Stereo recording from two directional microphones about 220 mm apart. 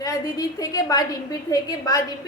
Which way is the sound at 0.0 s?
15° left (ahead or behind).